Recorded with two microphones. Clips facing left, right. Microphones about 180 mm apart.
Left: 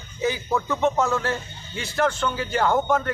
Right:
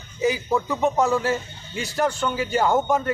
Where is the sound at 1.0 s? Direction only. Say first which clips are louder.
Right 3 dB; 15° right (ahead or behind).